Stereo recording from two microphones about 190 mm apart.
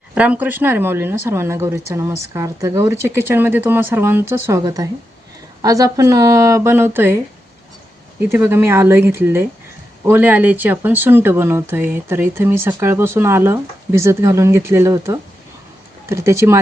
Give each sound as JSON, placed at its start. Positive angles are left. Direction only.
{"t": 0.1, "sound": "speech", "side_deg": -5}
{"t": 8.3, "sound": "speech", "side_deg": -10}